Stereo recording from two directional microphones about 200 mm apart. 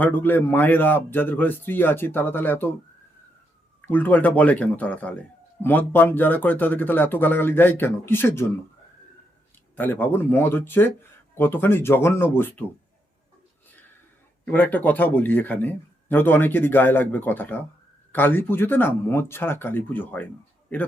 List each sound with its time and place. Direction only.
0.0 s a man's voice: 10° left (ahead or behind)
3.8 s a man's voice: 10° left (ahead or behind)
9.7 s a man's voice: 10° left (ahead or behind)
14.5 s a man's voice: 10° left (ahead or behind)